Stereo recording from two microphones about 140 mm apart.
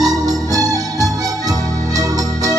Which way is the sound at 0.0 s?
25° right (ahead or behind).